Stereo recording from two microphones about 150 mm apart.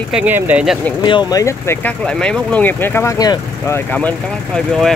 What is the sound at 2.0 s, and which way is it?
Speech, 5° left (ahead or behind).